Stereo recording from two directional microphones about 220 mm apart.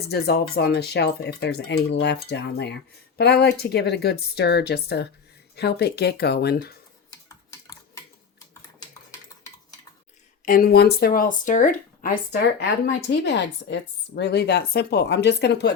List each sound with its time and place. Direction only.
0.1 s speech: 45° left (ahead or behind)
10.4 s speech: 40° left (ahead or behind)